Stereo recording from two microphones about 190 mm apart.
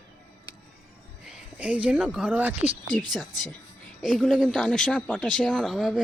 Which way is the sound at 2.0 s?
5° right (ahead or behind).